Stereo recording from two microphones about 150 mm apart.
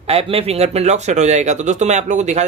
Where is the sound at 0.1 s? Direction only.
40° right (ahead or behind).